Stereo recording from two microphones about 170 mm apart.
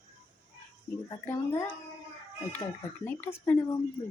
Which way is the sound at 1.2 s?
15° left (ahead or behind).